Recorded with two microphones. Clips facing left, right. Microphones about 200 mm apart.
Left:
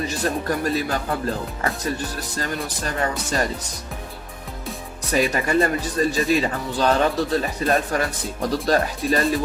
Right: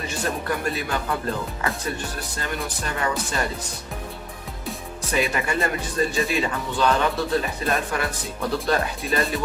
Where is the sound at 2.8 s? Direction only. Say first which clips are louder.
Left 2 dB; 40° left (ahead or behind).